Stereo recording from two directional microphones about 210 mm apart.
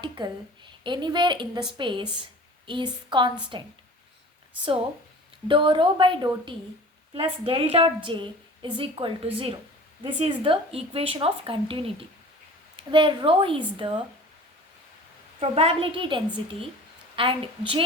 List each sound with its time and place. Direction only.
0.0 s a woman's voice: 20° right (ahead or behind)
5.5 s a woman's voice: 25° right (ahead or behind)
15.4 s a woman's voice: 30° right (ahead or behind)